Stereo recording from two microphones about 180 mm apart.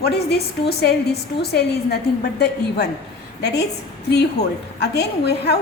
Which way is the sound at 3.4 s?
70° left (ahead or behind).